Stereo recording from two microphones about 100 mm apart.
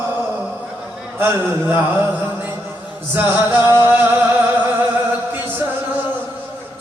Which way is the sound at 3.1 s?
20° right (ahead or behind).